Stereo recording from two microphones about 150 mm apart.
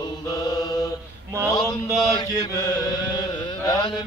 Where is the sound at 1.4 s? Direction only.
25° left (ahead or behind).